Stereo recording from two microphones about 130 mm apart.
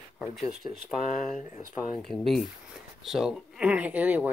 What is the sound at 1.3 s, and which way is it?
Speech, 70° left (ahead or behind).